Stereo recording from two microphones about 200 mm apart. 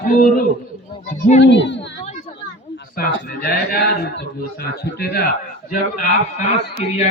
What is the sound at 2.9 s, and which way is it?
Speech, 50° left (ahead or behind).